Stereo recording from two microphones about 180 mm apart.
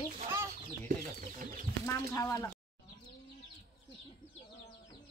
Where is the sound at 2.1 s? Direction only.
15° left (ahead or behind).